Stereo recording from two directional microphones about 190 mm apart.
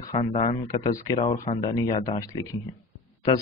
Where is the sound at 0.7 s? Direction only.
20° left (ahead or behind).